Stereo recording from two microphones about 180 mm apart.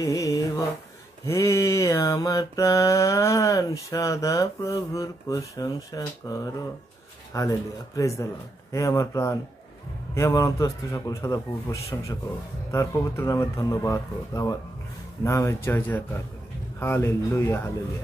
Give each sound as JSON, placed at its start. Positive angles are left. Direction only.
{"t": 0.0, "sound": "mantra", "side_deg": 20}